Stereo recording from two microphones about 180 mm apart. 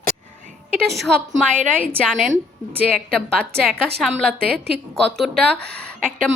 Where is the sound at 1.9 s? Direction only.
5° left (ahead or behind).